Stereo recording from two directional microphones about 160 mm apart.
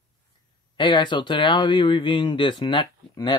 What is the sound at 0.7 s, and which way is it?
Speech, 30° left (ahead or behind).